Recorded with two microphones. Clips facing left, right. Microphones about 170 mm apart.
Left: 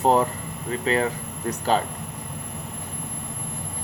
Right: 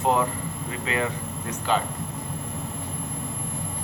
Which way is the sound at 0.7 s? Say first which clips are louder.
Left 5 dB; 40° left (ahead or behind).